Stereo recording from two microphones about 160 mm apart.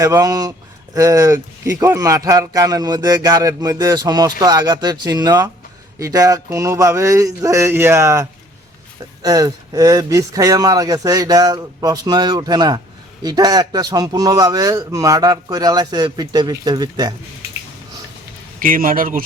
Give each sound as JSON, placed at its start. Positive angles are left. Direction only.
{"t": 0.0, "sound": "speech", "side_deg": -20}
{"t": 18.6, "sound": "speech", "side_deg": -60}